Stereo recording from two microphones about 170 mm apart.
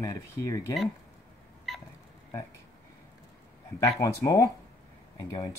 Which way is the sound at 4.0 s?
20° left (ahead or behind).